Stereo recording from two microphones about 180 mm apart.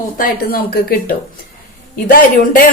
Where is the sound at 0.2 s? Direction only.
55° left (ahead or behind).